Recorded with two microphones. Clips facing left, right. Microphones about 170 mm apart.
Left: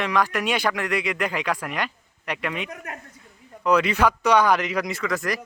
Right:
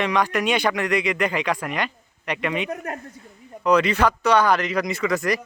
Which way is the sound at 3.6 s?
5° left (ahead or behind).